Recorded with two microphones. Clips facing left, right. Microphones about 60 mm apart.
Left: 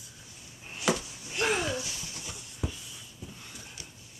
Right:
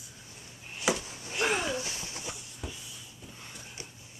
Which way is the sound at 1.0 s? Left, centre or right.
Right.